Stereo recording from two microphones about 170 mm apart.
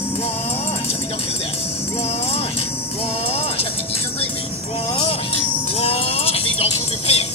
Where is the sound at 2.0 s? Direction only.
35° left (ahead or behind).